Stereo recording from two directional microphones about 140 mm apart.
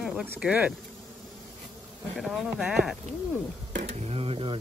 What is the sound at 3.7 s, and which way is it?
Speech, 55° right (ahead or behind).